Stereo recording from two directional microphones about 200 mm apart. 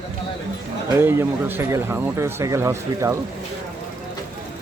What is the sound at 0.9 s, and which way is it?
Speech, 10° right (ahead or behind).